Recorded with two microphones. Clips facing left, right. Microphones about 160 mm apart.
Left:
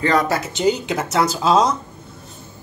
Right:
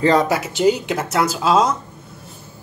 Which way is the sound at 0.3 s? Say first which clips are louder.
Right 2 dB; 5° right (ahead or behind).